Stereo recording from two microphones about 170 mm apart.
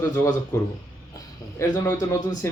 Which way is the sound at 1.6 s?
20° left (ahead or behind).